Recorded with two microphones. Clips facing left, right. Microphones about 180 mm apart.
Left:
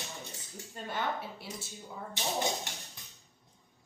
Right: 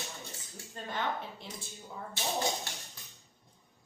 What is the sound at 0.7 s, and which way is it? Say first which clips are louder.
Speech: even; 10° left (ahead or behind).